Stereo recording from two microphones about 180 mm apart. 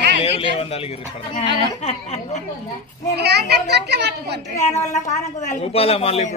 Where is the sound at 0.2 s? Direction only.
35° left (ahead or behind).